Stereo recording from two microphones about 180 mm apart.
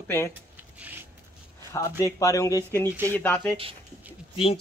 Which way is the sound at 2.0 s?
15° left (ahead or behind).